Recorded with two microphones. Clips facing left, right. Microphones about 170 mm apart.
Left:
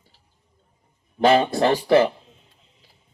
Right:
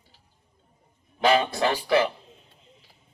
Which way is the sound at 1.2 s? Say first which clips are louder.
Left 4 dB; 30° left (ahead or behind).